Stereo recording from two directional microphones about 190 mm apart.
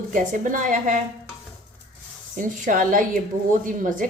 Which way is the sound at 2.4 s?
45° right (ahead or behind).